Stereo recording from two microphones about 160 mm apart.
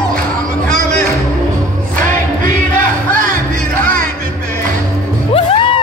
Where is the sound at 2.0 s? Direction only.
55° right (ahead or behind).